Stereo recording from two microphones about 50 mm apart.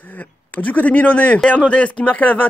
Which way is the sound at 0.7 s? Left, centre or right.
Left.